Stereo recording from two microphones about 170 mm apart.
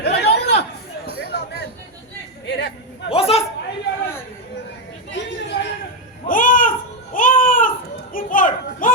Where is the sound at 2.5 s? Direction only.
85° left.